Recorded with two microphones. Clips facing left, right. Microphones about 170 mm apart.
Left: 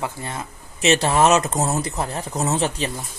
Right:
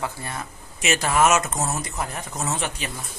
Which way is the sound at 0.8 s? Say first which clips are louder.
Left 4 dB; 30° left (ahead or behind).